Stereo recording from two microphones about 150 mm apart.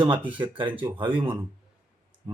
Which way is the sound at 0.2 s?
10° right (ahead or behind).